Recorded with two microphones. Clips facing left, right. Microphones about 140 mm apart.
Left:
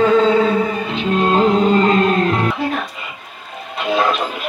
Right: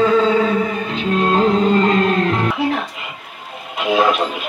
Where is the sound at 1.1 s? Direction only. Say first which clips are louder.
Left 1 dB; 25° left (ahead or behind).